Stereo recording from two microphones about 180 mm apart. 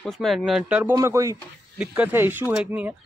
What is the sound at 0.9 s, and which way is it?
Speech, 15° right (ahead or behind).